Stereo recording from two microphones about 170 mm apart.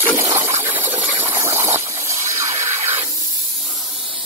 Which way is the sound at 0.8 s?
15° right (ahead or behind).